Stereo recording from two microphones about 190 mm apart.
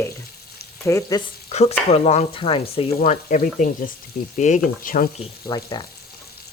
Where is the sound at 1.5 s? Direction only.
35° left (ahead or behind).